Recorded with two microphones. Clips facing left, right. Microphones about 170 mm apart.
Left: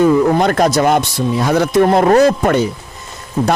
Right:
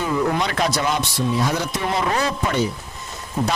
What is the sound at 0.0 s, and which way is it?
A man's voice, 45° left (ahead or behind).